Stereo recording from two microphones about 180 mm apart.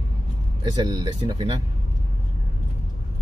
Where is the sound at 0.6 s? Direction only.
25° right (ahead or behind).